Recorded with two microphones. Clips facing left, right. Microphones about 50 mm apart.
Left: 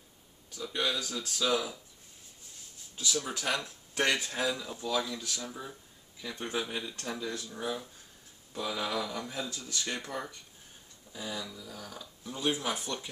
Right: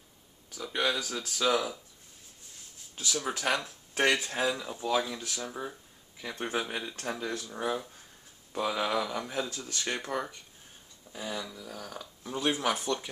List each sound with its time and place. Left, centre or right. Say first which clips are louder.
0.6 s speech: right 2 dB; right
3.2 s speech: right 4 dB; right
9.9 s speech: right 4 dB; right